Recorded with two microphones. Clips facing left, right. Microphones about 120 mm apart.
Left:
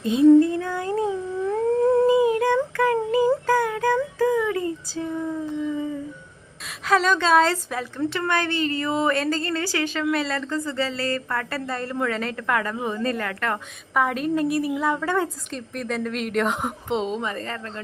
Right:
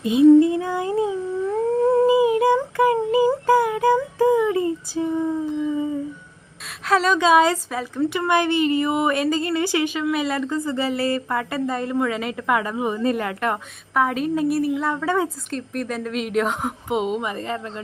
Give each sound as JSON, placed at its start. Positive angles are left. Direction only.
{"t": 0.0, "sound": "humming", "side_deg": -10}
{"t": 2.7, "sound": "a sound", "side_deg": -15}
{"t": 3.4, "sound": "music", "side_deg": -15}
{"t": 5.6, "sound": "humming", "side_deg": -20}
{"t": 6.8, "sound": "a woman's voice", "side_deg": 0}
{"t": 13.9, "sound": "a woman's voice", "side_deg": 0}
{"t": 17.0, "sound": "a woman's voice", "side_deg": -10}